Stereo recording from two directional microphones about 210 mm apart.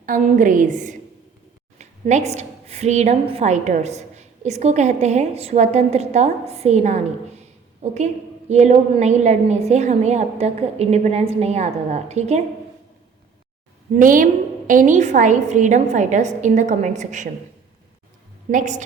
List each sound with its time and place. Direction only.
0.0 s a woman's voice: 40° right (ahead or behind)
13.9 s a woman's voice: 40° right (ahead or behind)
18.5 s a woman's voice: 35° right (ahead or behind)